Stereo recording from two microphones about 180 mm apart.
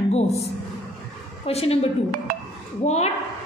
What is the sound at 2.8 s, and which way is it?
Speech, 35° left (ahead or behind).